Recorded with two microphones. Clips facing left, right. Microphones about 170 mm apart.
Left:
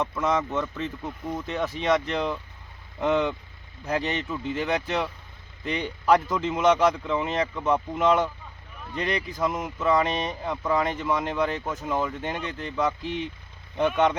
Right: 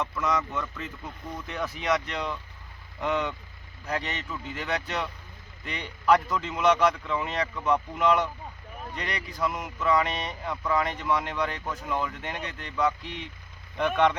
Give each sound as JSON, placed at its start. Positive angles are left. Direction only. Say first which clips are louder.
{"t": 0.0, "sound": "speech", "louder": "left 3 dB", "side_deg": 25}